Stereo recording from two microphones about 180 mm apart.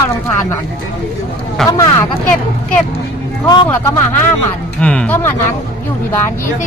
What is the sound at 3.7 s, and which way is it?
Speech, 10° left (ahead or behind).